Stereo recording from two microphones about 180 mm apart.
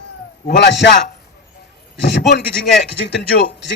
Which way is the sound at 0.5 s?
75° left (ahead or behind).